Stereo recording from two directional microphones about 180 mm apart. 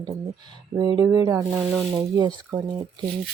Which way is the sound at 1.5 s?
5° right (ahead or behind).